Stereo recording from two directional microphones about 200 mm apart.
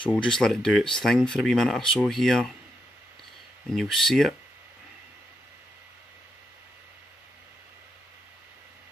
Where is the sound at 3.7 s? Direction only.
Centre (ahead or behind).